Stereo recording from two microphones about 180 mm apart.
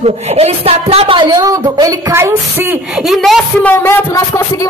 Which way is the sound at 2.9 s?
Centre (ahead or behind).